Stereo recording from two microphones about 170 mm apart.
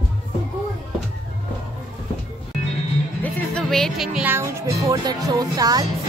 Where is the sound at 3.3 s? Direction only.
5° left (ahead or behind); by 5.8 s 25° right (ahead or behind).